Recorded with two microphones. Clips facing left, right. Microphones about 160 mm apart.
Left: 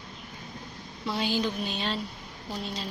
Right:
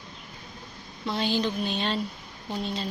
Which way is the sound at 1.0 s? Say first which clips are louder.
Right 2 dB; 10° left (ahead or behind).